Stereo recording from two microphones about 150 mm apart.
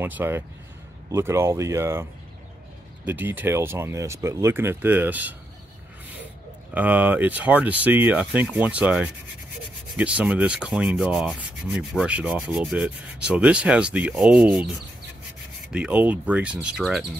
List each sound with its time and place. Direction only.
0.0 s rub: 15° right (ahead or behind)
3.1 s rub: 10° right (ahead or behind)
6.7 s rub: 10° right (ahead or behind)
15.7 s rub: 10° right (ahead or behind)